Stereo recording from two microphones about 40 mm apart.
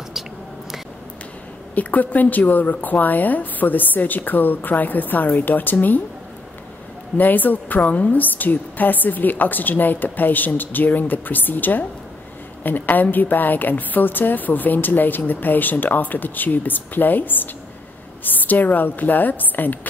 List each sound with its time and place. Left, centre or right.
1.8 s a woman's voice: left
7.2 s a woman's voice: left